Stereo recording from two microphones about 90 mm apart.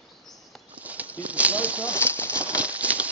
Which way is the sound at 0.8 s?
15° right (ahead or behind).